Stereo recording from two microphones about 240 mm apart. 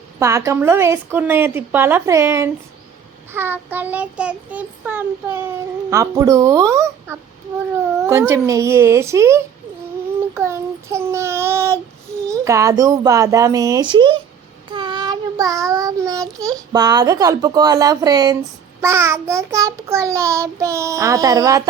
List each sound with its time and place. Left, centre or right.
0.2 s child singing: centre